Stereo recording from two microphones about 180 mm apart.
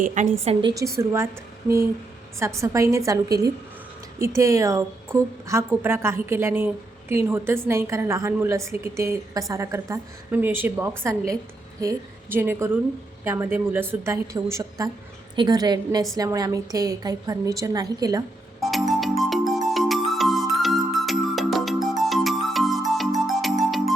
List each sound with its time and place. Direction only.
0.0 s a woman's voice: 45° right (ahead or behind)
0.7 s a woman's voice: 15° right (ahead or behind)
18.6 s music: centre (ahead or behind)